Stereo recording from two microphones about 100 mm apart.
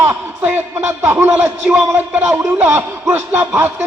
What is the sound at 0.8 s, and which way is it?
Speech, 20° right (ahead or behind).